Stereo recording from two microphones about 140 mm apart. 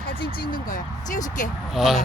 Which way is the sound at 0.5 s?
70° left (ahead or behind).